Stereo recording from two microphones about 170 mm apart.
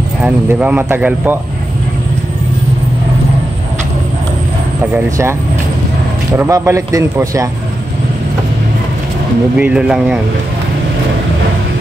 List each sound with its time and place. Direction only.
0.2 s speech: 10° right (ahead or behind)
4.9 s speech: 15° right (ahead or behind)
6.3 s speech: 15° right (ahead or behind)
9.6 s speech: 5° right (ahead or behind)